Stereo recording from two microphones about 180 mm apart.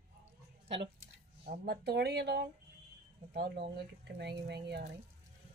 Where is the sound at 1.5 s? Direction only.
60° right (ahead or behind).